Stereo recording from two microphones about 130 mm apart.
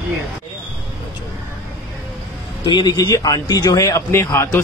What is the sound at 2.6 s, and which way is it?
Speech, 35° left (ahead or behind).